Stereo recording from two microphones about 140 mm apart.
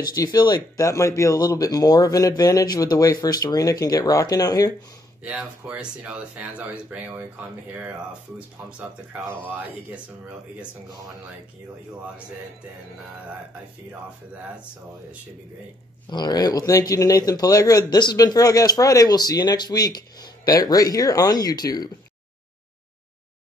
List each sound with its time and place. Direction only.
0.1 s speech: 25° left (ahead or behind)
5.2 s speech: 10° right (ahead or behind)
9.3 s speech: 15° right (ahead or behind)
16.1 s speech: 30° left (ahead or behind)